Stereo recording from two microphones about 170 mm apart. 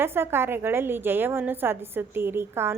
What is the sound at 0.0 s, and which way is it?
A woman's voice, 15° right (ahead or behind).